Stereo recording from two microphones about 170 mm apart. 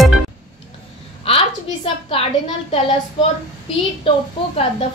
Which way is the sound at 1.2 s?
35° left (ahead or behind).